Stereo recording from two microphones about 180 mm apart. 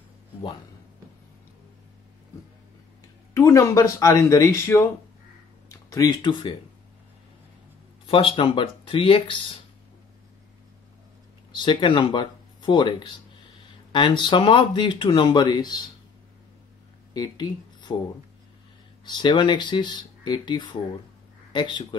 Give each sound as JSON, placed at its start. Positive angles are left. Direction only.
{"t": 3.3, "sound": "speech", "side_deg": 15}
{"t": 8.1, "sound": "speech", "side_deg": 30}
{"t": 11.5, "sound": "speech", "side_deg": 25}
{"t": 13.9, "sound": "speech", "side_deg": 25}
{"t": 17.1, "sound": "speech", "side_deg": 25}
{"t": 19.0, "sound": "a man's voice", "side_deg": 25}